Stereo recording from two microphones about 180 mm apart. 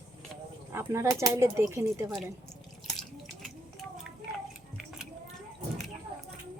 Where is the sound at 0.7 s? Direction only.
15° right (ahead or behind).